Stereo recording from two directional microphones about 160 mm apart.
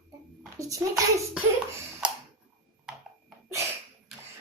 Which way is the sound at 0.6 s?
20° right (ahead or behind).